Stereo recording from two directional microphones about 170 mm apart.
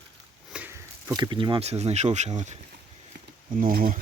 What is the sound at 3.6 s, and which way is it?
Speech, 55° right (ahead or behind).